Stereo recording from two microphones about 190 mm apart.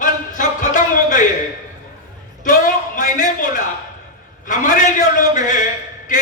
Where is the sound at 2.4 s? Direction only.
45° left (ahead or behind).